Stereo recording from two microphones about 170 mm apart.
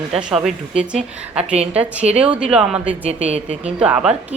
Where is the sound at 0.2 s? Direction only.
5° right (ahead or behind).